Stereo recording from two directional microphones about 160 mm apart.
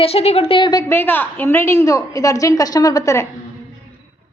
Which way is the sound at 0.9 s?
10° left (ahead or behind).